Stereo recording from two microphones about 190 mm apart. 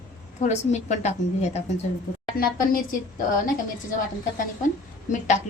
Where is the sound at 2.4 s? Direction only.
50° left (ahead or behind).